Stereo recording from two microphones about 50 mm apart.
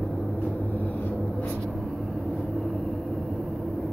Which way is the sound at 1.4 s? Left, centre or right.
Centre.